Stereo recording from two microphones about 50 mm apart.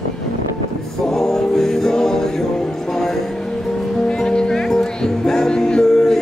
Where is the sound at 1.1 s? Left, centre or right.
Centre.